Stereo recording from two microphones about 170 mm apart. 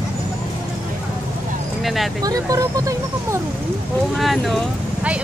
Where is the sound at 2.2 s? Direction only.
20° right (ahead or behind).